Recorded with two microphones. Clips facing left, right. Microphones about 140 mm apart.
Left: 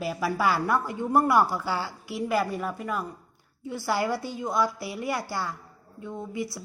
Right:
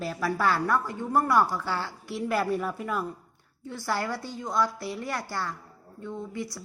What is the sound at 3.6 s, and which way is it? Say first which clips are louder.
A woman's voice: left 3 dB; 10° left (ahead or behind).